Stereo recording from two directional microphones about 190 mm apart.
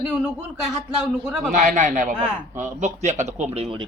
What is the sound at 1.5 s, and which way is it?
A man's voice, 45° right (ahead or behind).